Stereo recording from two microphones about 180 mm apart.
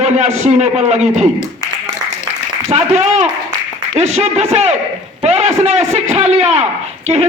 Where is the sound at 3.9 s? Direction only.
35° right (ahead or behind).